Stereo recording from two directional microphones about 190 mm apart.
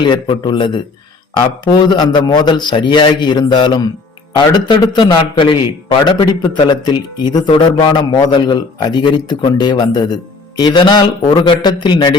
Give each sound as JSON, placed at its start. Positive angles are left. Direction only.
{"t": 0.0, "sound": "a man's voice", "side_deg": 25}